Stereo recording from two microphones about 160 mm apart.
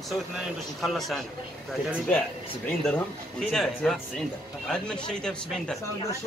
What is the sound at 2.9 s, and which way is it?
A man's voice, 5° left (ahead or behind).